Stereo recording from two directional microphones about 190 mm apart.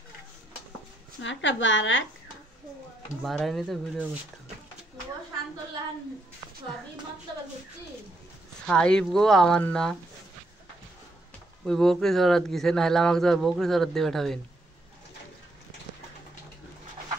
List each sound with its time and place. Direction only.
1.2 s speech: 75° left (ahead or behind)
3.2 s speech: centre (ahead or behind)
8.6 s speech: 5° left (ahead or behind)
11.6 s speech: 5° left (ahead or behind)